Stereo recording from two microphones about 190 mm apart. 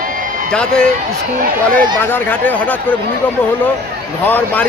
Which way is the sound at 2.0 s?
10° left (ahead or behind).